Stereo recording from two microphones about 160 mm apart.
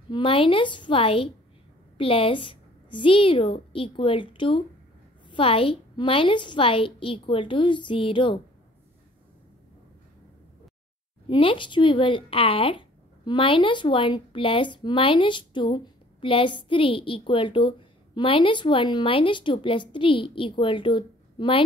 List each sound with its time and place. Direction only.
0.1 s speech: 30° left (ahead or behind)
11.2 s speech: 30° left (ahead or behind)